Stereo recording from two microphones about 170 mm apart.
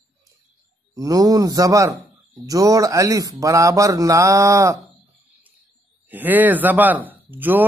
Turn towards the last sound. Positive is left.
turn(degrees=-10)  # may be behind; listen again after turning